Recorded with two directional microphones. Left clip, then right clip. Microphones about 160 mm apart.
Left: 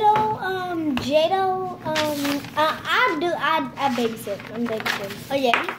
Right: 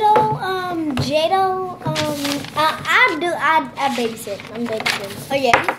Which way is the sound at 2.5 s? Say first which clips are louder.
Right 5 dB; 10° left (ahead or behind).